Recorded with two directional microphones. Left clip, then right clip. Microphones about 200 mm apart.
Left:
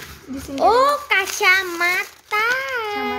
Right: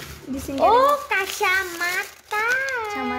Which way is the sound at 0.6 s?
50° left (ahead or behind).